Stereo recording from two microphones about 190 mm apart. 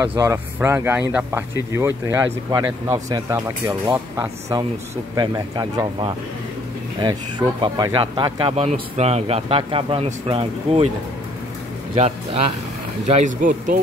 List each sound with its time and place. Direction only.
0.0 s speech: 10° right (ahead or behind); by 10.9 s 30° right (ahead or behind)
12.0 s speech: 35° right (ahead or behind)